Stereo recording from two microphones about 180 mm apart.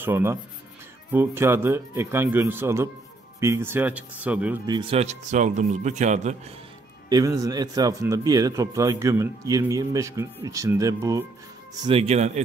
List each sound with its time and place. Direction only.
0.0 s speech: 15° right (ahead or behind)
4.6 s speech: 25° right (ahead or behind)
7.1 s a man's voice: 20° right (ahead or behind)
11.8 s speech: 35° right (ahead or behind)